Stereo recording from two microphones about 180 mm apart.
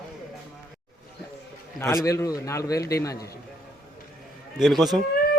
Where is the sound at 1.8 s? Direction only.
15° left (ahead or behind).